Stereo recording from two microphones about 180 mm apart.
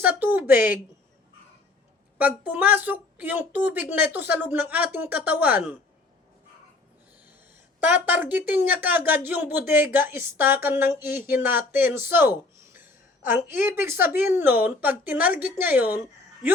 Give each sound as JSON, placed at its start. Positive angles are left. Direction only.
{"t": 0.0, "sound": "a sound", "side_deg": -10}
{"t": 2.1, "sound": "a woman's voice", "side_deg": -10}
{"t": 7.8, "sound": "a woman's voice", "side_deg": -10}